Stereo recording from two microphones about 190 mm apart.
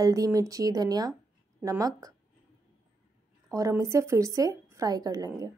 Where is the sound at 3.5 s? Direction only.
15° right (ahead or behind).